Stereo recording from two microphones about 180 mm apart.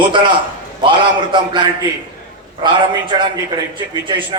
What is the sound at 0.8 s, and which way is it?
A man's voice, 25° right (ahead or behind).